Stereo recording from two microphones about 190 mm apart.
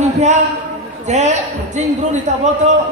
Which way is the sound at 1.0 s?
40° right (ahead or behind).